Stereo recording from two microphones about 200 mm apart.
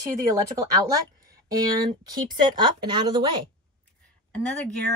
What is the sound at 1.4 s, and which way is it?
Speech, 20° right (ahead or behind).